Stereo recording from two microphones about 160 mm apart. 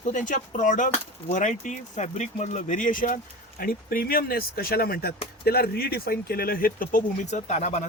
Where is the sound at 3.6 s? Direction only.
70° left (ahead or behind).